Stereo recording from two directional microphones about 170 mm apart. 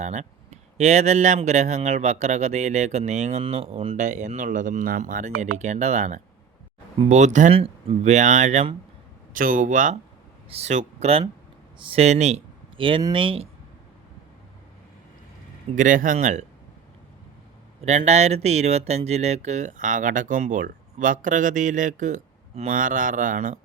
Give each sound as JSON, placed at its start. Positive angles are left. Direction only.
{"t": 0.0, "sound": "speech", "side_deg": -45}
{"t": 9.3, "sound": "speech", "side_deg": -55}
{"t": 15.7, "sound": "speech", "side_deg": -50}
{"t": 17.8, "sound": "speech", "side_deg": -40}